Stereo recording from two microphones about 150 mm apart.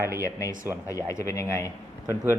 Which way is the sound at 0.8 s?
20° left (ahead or behind).